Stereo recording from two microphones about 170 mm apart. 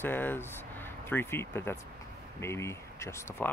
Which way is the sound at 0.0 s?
10° left (ahead or behind).